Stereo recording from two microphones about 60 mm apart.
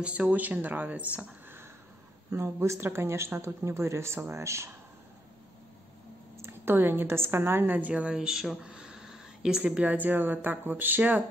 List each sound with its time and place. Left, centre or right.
0.0 s speech: right
2.3 s speech: right
6.3 s a woman's voice: right
8.1 s speech: centre; by 11.2 s right